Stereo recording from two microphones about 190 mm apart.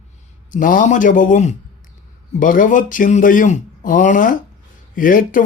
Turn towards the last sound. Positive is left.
turn(degrees=45)  # may be behind; listen again after turning